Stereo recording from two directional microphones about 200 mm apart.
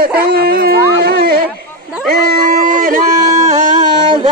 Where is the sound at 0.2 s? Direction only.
50° right (ahead or behind).